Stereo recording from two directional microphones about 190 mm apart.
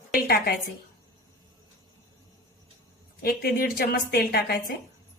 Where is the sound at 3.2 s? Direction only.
55° left (ahead or behind).